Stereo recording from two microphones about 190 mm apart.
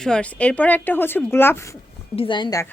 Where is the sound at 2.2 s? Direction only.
25° left (ahead or behind).